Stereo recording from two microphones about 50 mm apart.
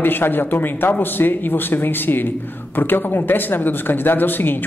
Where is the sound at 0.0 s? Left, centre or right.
Left.